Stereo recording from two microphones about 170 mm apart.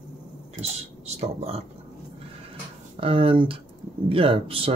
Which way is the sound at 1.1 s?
35° right (ahead or behind).